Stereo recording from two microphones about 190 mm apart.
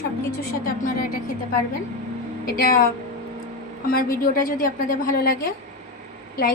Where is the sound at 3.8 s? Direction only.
50° left (ahead or behind).